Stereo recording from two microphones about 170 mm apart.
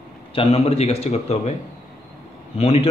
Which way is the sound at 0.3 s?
35° left (ahead or behind).